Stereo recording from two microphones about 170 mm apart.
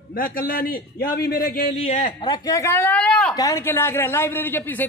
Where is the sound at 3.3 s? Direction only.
15° left (ahead or behind).